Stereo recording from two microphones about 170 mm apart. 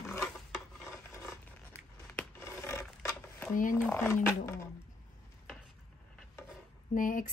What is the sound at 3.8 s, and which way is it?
Speech, 15° left (ahead or behind).